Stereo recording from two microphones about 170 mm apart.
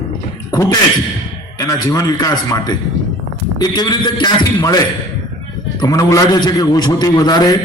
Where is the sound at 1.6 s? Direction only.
20° left (ahead or behind).